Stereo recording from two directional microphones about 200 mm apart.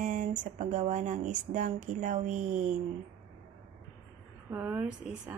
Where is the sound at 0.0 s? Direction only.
40° right (ahead or behind).